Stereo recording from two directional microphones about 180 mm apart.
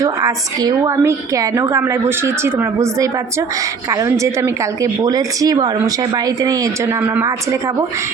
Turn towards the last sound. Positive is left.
turn(degrees=-15)  # may be behind; listen again after turning